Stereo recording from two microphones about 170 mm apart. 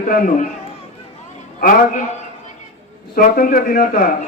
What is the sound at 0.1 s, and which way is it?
Speech, 50° left (ahead or behind).